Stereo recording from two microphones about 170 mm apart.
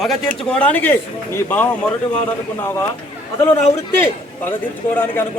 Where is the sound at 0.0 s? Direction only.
5° left (ahead or behind).